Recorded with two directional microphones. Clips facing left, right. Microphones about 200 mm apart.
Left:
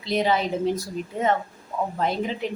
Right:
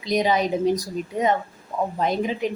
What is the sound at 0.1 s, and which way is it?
Speech, 15° right (ahead or behind).